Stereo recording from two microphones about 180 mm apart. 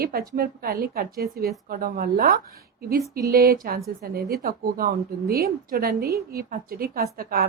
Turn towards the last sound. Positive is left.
turn(degrees=-55)  # may be behind; listen again after turning